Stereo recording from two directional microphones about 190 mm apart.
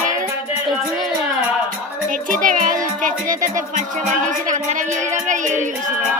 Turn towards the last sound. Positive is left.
turn(degrees=-40)  # may be behind; listen again after turning